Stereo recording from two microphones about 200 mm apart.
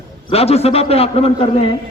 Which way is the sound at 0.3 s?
30° left (ahead or behind).